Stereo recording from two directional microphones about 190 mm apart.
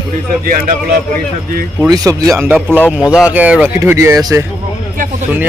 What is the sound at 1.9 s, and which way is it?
Speech, 20° right (ahead or behind).